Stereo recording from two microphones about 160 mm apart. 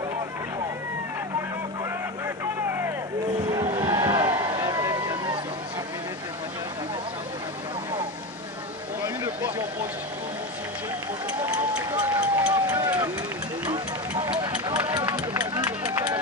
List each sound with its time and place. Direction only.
2.2 s vehicle: 15° right (ahead or behind)
3.5 s a sound: 30° right (ahead or behind)
11.3 s run: 5° right (ahead or behind)
12.4 s a sound: 25° right (ahead or behind)
13.7 s music: 30° right (ahead or behind)
14.9 s run: 25° right (ahead or behind)